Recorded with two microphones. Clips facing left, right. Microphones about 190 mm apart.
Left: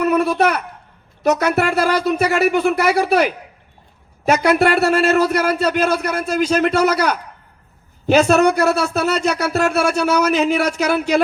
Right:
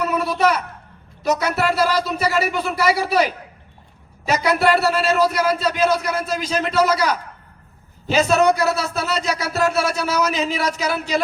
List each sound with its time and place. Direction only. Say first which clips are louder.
0.0 s a sound: left 4 dB; 60° left (ahead or behind)
1.2 s speech: left 4 dB; 60° left (ahead or behind)
4.3 s speech: left 3 dB; 55° left (ahead or behind)